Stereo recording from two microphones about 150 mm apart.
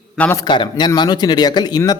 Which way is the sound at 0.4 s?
30° left (ahead or behind).